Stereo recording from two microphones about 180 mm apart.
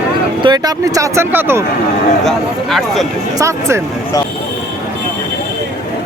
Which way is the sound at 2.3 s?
Centre (ahead or behind).